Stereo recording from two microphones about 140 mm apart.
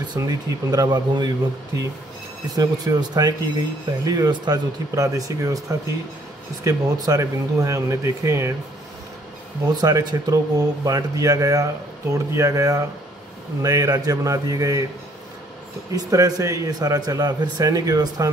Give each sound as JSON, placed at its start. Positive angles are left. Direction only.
{"t": 0.0, "sound": "speech", "side_deg": -30}
{"t": 2.4, "sound": "speech", "side_deg": -25}
{"t": 9.7, "sound": "speech", "side_deg": -25}
{"t": 15.9, "sound": "speech", "side_deg": -25}